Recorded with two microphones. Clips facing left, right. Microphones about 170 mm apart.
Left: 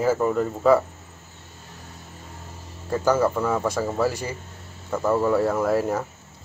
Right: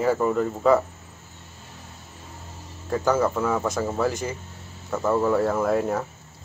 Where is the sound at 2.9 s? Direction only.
Centre (ahead or behind).